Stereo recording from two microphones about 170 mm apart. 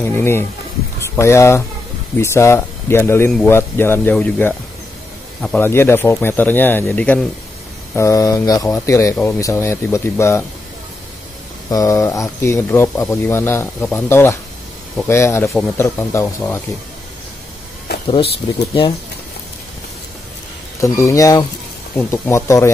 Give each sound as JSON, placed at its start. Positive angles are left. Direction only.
{"t": 0.0, "sound": "speech", "side_deg": 15}
{"t": 11.7, "sound": "speech", "side_deg": 20}
{"t": 17.9, "sound": "a sound", "side_deg": 70}
{"t": 18.4, "sound": "speech", "side_deg": 40}
{"t": 20.8, "sound": "speech", "side_deg": 20}